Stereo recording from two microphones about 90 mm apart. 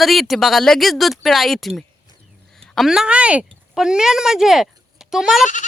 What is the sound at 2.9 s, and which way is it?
Speech, 10° right (ahead or behind).